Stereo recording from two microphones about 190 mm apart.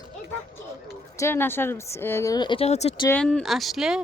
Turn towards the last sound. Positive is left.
turn(degrees=-5)  # may be behind; listen again after turning